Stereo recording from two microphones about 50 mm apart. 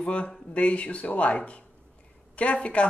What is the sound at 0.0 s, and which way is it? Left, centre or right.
Speech, left.